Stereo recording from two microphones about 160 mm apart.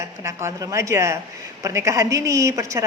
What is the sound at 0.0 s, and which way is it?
A woman's voice, 20° right (ahead or behind).